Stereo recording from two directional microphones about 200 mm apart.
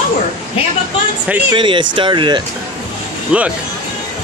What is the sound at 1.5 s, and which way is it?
Speech, 25° right (ahead or behind).